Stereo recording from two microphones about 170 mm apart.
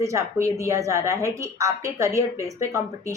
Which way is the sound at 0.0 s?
20° right (ahead or behind).